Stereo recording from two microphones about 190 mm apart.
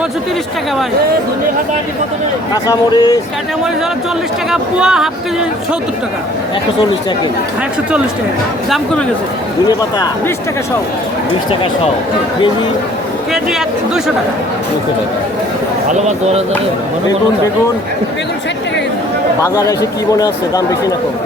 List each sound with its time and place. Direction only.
2.6 s a man's voice: 20° left (ahead or behind)
4.5 s speech: 5° right (ahead or behind)
9.6 s a man's voice: 20° left (ahead or behind)
13.3 s speech: centre (ahead or behind)
15.9 s speech: 35° right (ahead or behind)
19.4 s speech: 15° left (ahead or behind)